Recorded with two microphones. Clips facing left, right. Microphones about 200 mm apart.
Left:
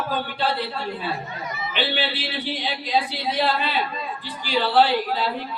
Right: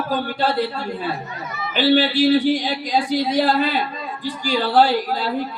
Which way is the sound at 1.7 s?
45° right (ahead or behind).